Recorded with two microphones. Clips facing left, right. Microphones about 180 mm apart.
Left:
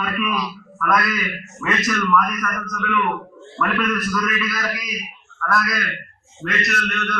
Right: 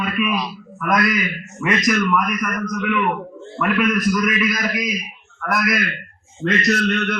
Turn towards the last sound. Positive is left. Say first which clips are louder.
# right 7 dB
turn(degrees=-30)  # may be behind; listen again after turning